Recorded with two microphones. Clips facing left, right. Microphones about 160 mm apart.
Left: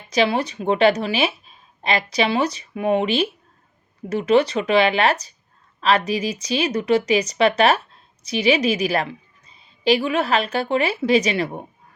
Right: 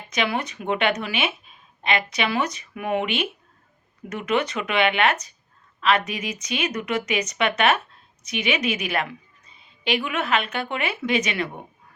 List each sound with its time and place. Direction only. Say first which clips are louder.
0.1 s a woman's voice: left 6 dB; 35° left (ahead or behind)